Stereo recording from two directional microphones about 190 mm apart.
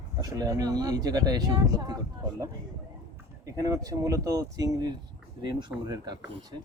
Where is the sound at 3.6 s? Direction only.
20° right (ahead or behind).